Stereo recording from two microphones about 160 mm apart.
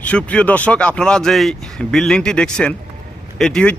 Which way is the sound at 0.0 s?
10° left (ahead or behind).